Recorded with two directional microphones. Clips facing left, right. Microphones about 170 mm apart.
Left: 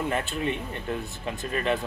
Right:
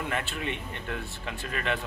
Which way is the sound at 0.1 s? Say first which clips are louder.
Left 4 dB; 35° left (ahead or behind).